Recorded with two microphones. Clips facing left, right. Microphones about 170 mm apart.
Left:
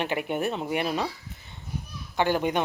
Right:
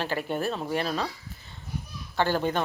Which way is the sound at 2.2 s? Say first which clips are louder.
Left 1 dB; 15° left (ahead or behind).